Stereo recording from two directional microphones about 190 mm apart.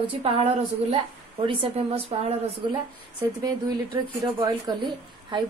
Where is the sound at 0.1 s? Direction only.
30° right (ahead or behind).